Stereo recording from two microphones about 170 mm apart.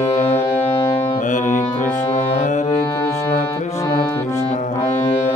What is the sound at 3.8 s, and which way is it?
Music, 20° left (ahead or behind).